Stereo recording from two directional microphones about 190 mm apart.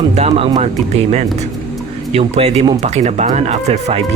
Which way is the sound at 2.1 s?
35° right (ahead or behind).